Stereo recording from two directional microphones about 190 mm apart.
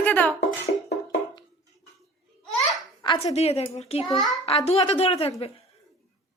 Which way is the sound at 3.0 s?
30° left (ahead or behind).